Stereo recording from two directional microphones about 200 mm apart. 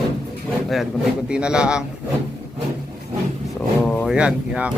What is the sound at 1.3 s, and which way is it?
Speech, 5° right (ahead or behind).